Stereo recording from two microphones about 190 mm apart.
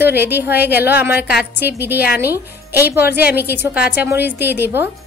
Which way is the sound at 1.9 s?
55° left (ahead or behind).